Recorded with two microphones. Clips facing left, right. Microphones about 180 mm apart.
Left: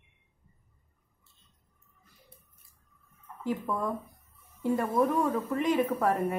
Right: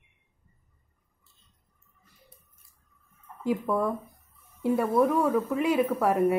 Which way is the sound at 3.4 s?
10° right (ahead or behind).